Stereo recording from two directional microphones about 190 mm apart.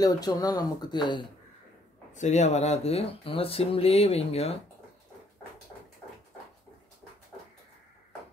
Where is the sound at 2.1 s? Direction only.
40° left (ahead or behind).